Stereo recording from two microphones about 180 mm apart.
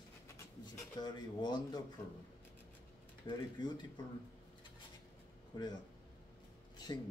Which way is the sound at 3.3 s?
25° left (ahead or behind).